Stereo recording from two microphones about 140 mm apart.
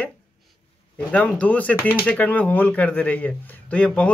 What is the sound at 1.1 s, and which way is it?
Speech, 10° left (ahead or behind).